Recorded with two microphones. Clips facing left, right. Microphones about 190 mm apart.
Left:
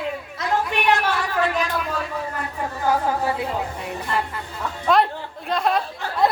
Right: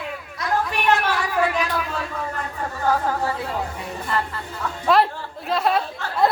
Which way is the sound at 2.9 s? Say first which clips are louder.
Left 1 dB; 15° left (ahead or behind).